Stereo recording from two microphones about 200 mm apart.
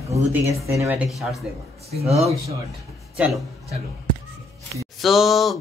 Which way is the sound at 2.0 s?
30° right (ahead or behind).